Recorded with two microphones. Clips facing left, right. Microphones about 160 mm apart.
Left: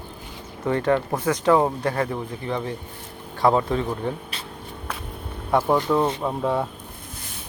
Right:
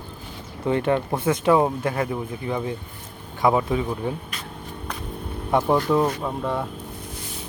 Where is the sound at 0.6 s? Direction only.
20° right (ahead or behind).